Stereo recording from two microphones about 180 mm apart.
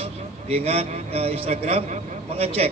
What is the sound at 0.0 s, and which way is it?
A man's voice, 35° right (ahead or behind).